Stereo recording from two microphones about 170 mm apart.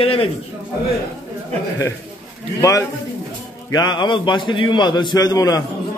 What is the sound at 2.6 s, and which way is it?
A man's voice, 20° left (ahead or behind).